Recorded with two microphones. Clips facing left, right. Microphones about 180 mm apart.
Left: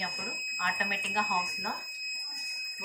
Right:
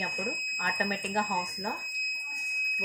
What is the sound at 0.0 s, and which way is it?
Fire alarm, 55° right (ahead or behind).